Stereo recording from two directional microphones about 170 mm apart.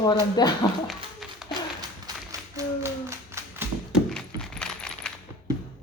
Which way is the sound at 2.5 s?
15° right (ahead or behind).